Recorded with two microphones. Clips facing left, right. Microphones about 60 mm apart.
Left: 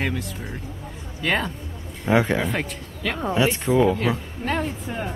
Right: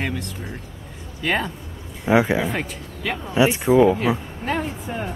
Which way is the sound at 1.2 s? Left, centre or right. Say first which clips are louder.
Right 1 dB; centre.